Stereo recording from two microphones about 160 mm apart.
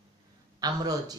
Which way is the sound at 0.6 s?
25° right (ahead or behind).